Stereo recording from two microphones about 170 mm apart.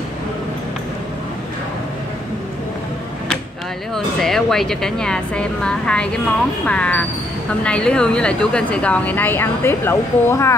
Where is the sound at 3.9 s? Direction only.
Centre (ahead or behind).